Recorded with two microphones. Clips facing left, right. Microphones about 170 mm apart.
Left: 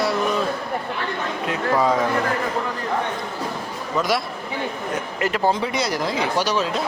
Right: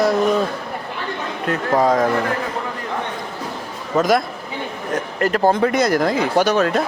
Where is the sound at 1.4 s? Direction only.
45° right (ahead or behind).